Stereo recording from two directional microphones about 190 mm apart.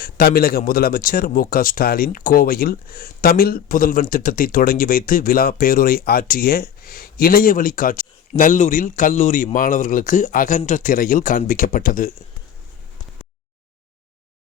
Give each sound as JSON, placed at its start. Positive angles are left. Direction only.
{"t": 0.0, "sound": "a man's voice", "side_deg": 55}